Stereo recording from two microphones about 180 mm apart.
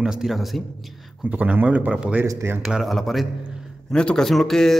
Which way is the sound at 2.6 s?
Centre (ahead or behind).